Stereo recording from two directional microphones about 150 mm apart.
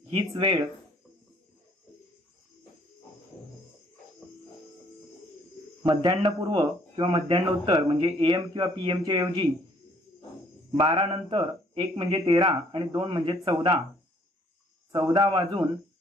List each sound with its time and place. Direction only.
0.1 s speech: 35° right (ahead or behind)
5.9 s speech: 30° right (ahead or behind)
10.8 s speech: 35° right (ahead or behind)
14.9 s speech: 30° right (ahead or behind)